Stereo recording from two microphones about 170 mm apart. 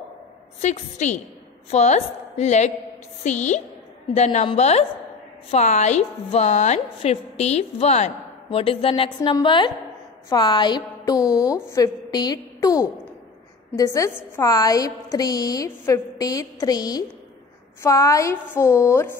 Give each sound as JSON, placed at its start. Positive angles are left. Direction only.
{"t": 0.6, "sound": "a woman's voice", "side_deg": 45}